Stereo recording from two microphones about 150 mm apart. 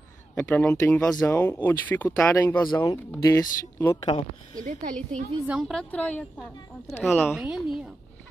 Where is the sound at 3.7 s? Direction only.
15° left (ahead or behind).